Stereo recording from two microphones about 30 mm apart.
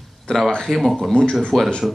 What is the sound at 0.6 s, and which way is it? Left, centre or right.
Speech, centre.